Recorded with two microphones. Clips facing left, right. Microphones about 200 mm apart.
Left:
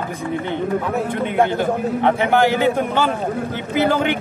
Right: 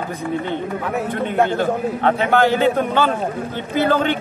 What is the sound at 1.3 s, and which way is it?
A man's voice, 15° left (ahead or behind).